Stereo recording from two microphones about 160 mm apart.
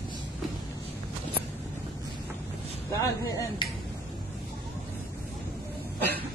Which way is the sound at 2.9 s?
20° left (ahead or behind).